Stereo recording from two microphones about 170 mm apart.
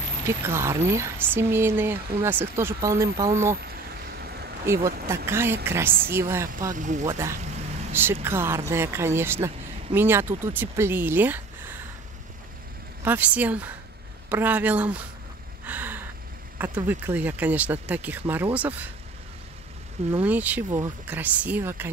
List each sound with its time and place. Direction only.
0.3 s speech: 15° right (ahead or behind)
4.6 s speech: 15° right (ahead or behind)
6.7 s speech: 50° right (ahead or behind)
7.1 s speech: 15° right (ahead or behind)
13.0 s speech: 10° right (ahead or behind)
15.6 s a sound: 10° right (ahead or behind)
16.5 s speech: 10° right (ahead or behind)
20.2 s speech: 10° right (ahead or behind)